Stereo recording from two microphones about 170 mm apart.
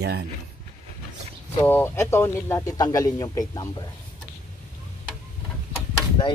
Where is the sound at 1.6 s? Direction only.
15° left (ahead or behind).